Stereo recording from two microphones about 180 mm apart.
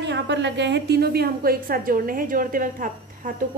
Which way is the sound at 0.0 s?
75° right (ahead or behind).